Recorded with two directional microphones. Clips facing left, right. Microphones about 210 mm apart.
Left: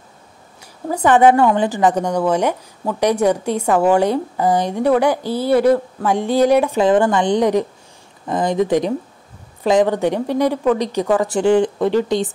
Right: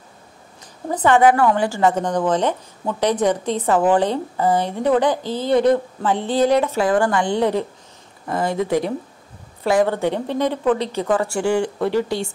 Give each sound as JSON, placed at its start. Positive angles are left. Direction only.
{"t": 0.8, "sound": "a woman's voice", "side_deg": 15}